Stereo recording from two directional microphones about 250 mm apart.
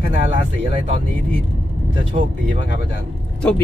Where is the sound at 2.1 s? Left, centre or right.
Right.